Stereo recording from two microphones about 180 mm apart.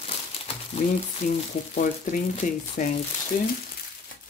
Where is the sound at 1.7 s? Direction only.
45° left (ahead or behind).